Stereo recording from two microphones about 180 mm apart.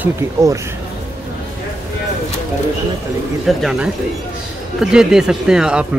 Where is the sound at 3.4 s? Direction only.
Centre (ahead or behind).